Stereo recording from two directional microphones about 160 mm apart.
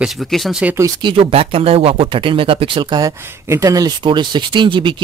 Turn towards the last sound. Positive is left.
turn(degrees=-30)  # may be behind; listen again after turning